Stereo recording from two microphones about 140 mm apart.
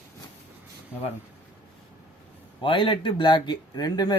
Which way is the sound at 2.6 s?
35° left (ahead or behind).